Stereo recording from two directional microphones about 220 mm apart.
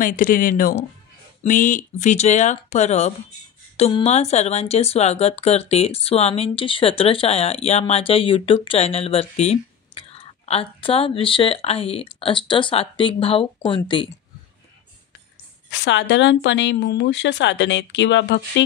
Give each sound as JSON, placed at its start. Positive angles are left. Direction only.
{"t": 0.0, "sound": "speech", "side_deg": 40}
{"t": 15.7, "sound": "a woman's voice", "side_deg": 55}